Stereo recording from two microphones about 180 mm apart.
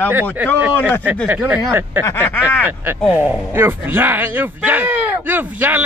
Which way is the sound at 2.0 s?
10° left (ahead or behind).